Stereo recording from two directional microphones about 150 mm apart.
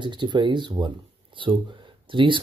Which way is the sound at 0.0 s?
30° right (ahead or behind).